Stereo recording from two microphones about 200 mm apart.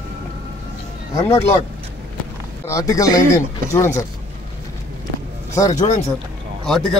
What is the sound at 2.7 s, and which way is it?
Speech, 15° left (ahead or behind).